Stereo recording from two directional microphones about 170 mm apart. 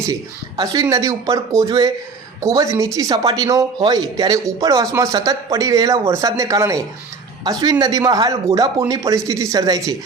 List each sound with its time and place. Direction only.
0.0 s speech: 20° right (ahead or behind)